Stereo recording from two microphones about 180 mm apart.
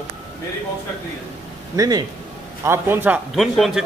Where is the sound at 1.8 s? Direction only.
20° right (ahead or behind).